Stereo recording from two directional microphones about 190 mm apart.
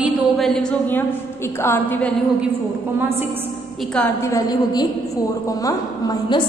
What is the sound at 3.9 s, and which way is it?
A woman's voice, 10° left (ahead or behind).